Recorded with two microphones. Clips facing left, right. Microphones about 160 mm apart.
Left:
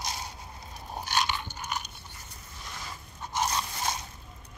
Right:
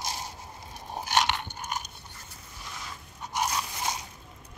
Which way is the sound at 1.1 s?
70° right (ahead or behind).